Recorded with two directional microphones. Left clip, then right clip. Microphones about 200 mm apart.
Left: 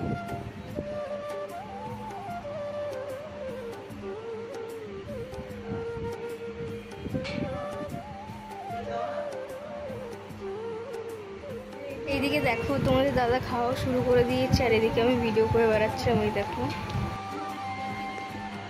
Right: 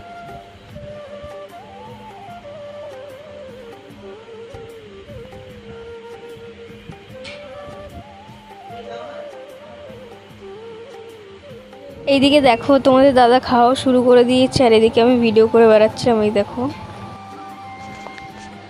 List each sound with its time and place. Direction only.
12.1 s speech: 40° right (ahead or behind)